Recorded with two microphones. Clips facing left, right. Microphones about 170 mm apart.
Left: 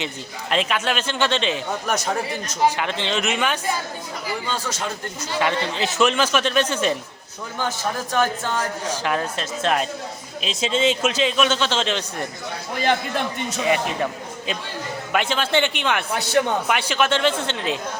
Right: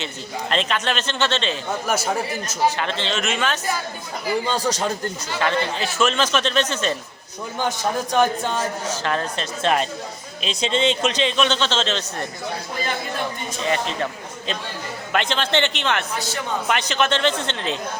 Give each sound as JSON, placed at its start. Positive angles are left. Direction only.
{"t": 0.5, "sound": "speech", "side_deg": 10}
{"t": 1.9, "sound": "a man's voice", "side_deg": -5}
{"t": 2.6, "sound": "speech", "side_deg": 10}
{"t": 4.4, "sound": "speech", "side_deg": -35}
{"t": 5.4, "sound": "speech", "side_deg": 15}
{"t": 7.6, "sound": "a man's voice", "side_deg": -15}
{"t": 8.9, "sound": "a man's voice", "side_deg": 10}
{"t": 13.6, "sound": "a man's voice", "side_deg": 10}
{"t": 16.1, "sound": "a man's voice", "side_deg": 65}
{"t": 16.6, "sound": "speech", "side_deg": 10}